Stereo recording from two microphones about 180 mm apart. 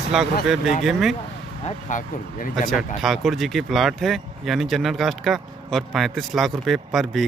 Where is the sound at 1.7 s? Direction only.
45° left (ahead or behind).